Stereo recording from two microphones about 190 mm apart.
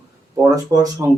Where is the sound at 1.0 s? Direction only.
20° right (ahead or behind).